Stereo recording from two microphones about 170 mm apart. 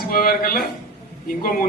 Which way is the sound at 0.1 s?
60° left (ahead or behind).